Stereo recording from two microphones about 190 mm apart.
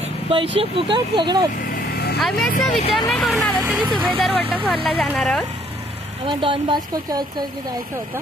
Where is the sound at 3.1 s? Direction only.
Centre (ahead or behind).